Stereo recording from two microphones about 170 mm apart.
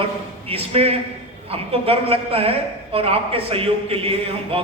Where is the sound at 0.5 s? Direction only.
35° right (ahead or behind).